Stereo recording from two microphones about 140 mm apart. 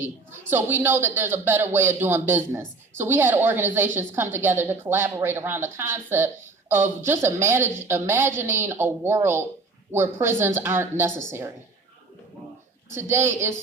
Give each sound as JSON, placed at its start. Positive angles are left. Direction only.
{"t": 0.0, "sound": "a woman's voice", "side_deg": -15}
{"t": 12.9, "sound": "a woman's voice", "side_deg": -15}